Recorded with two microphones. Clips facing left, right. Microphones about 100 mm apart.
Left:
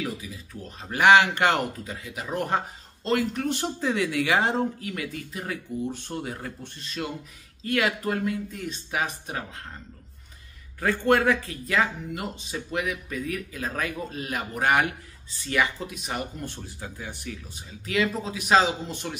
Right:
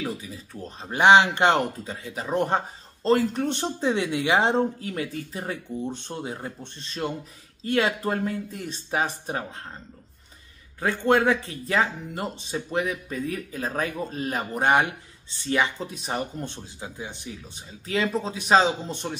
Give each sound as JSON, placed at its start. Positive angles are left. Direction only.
{"t": 0.0, "sound": "speech", "side_deg": -30}
{"t": 10.8, "sound": "speech", "side_deg": -20}
{"t": 16.5, "sound": "speech", "side_deg": -20}